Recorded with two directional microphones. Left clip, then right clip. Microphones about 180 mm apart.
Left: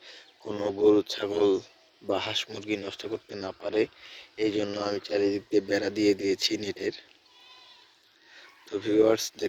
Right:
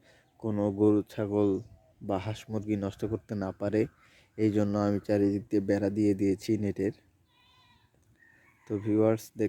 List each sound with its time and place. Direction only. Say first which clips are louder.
0.9 s speech: left 5 dB; 5° right (ahead or behind); by 5.6 s 20° right (ahead or behind)
5.6 s speech: even; 10° right (ahead or behind)
8.8 s speech: left 4 dB; centre (ahead or behind)